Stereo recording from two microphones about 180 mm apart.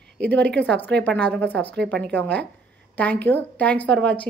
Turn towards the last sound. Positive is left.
turn(degrees=5)  # may be behind; listen again after turning